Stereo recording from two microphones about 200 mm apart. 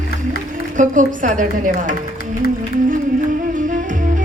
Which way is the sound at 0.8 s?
40° right (ahead or behind).